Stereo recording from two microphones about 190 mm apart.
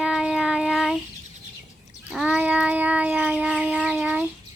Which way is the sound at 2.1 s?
5° right (ahead or behind).